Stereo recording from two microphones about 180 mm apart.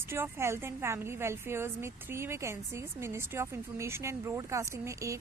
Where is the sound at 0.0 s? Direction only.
15° right (ahead or behind).